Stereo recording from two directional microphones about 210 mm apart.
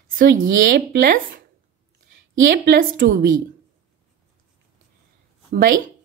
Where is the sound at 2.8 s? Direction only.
45° right (ahead or behind).